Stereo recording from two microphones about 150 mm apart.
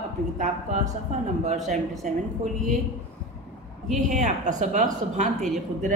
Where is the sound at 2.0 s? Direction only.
55° right (ahead or behind).